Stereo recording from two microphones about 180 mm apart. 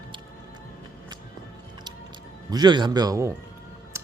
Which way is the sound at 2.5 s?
25° right (ahead or behind).